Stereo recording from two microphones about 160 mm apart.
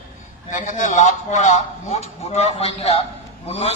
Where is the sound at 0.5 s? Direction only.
50° left (ahead or behind).